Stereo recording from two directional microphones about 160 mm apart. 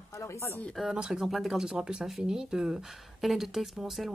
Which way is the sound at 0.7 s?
5° right (ahead or behind).